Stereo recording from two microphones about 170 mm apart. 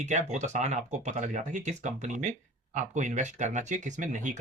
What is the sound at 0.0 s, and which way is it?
Speech, 45° right (ahead or behind).